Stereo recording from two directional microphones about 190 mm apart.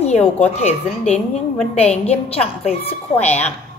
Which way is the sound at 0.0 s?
35° left (ahead or behind).